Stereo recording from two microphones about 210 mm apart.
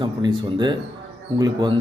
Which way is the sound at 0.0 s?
20° right (ahead or behind).